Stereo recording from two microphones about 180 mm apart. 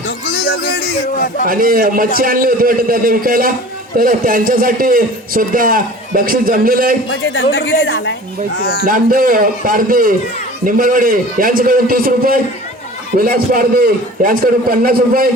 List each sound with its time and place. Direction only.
0.3 s a sound: 55° left (ahead or behind)
1.5 s a man's voice: 50° right (ahead or behind)
7.1 s a woman's voice: 90° left
8.8 s a man's voice: 50° right (ahead or behind)